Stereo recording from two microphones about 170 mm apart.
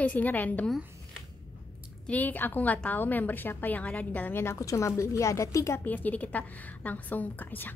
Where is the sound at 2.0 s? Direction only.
10° left (ahead or behind).